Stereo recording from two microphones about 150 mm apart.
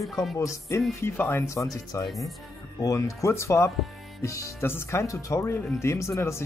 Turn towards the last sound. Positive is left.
turn(degrees=20)  # may be behind; listen again after turning